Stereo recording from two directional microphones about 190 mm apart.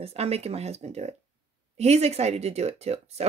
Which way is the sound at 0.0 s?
30° right (ahead or behind).